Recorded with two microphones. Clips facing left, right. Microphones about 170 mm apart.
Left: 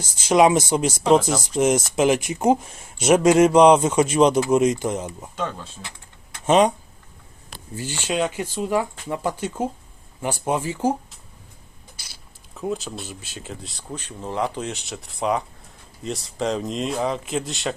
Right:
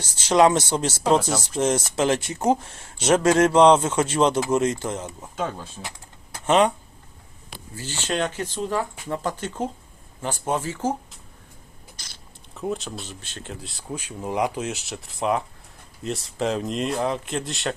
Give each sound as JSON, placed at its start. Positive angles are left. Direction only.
{"t": 0.0, "sound": "speech", "side_deg": 10}
{"t": 6.4, "sound": "speech", "side_deg": 15}
{"t": 7.8, "sound": "speech", "side_deg": 15}
{"t": 12.0, "sound": "a sound", "side_deg": 10}
{"t": 12.5, "sound": "speech", "side_deg": 0}